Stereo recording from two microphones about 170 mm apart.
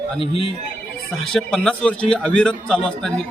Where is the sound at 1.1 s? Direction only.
Centre (ahead or behind).